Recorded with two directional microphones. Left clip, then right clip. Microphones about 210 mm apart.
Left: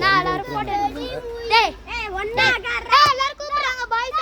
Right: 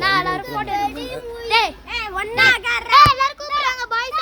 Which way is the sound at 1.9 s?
35° right (ahead or behind).